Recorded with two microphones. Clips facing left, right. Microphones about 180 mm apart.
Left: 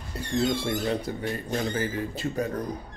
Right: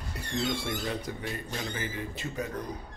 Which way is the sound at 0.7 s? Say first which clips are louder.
Left 6 dB; 35° left (ahead or behind).